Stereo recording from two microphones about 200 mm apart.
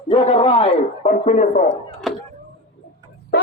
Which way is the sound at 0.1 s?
25° left (ahead or behind).